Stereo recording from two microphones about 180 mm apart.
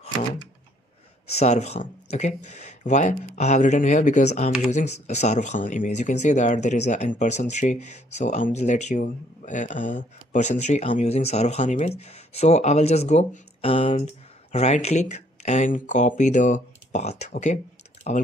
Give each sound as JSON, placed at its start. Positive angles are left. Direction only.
{"t": 0.0, "sound": "computer keyboard", "side_deg": 30}
{"t": 1.3, "sound": "speech", "side_deg": 40}